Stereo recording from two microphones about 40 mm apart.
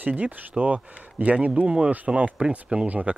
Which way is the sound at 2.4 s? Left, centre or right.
Right.